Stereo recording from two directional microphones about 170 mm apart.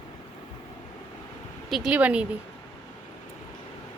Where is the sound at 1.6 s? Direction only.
Centre (ahead or behind).